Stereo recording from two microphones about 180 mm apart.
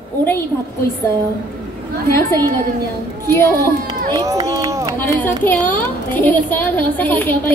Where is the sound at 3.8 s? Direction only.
20° right (ahead or behind).